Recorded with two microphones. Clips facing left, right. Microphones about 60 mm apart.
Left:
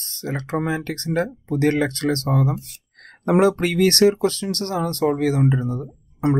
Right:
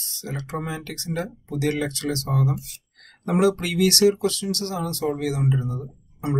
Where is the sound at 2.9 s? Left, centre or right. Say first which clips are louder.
Left 5 dB; left.